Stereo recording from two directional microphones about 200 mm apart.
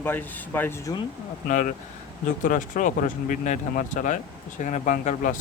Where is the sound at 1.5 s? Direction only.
40° left (ahead or behind).